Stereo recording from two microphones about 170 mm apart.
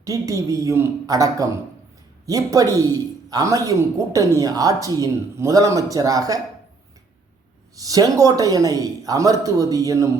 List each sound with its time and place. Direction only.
0.0 s a man's voice: 20° right (ahead or behind)
7.8 s a man's voice: 20° right (ahead or behind)